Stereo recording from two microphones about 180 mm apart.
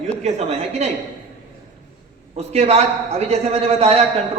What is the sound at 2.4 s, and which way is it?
A man's voice, 35° right (ahead or behind).